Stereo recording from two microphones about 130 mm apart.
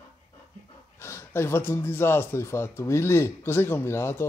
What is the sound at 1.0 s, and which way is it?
Speech, 20° left (ahead or behind).